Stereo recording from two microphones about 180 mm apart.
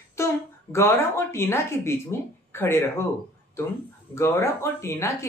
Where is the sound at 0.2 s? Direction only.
15° left (ahead or behind).